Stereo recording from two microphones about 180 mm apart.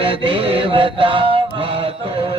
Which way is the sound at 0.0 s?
30° right (ahead or behind).